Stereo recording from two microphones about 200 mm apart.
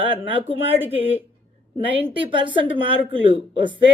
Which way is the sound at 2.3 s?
25° right (ahead or behind).